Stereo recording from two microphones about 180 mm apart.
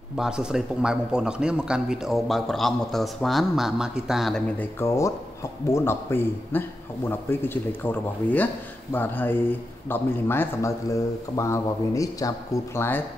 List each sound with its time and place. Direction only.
0.1 s a man's voice: 5° right (ahead or behind)
4.7 s speech: 15° left (ahead or behind)